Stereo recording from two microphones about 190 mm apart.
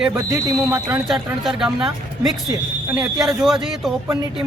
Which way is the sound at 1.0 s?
Centre (ahead or behind).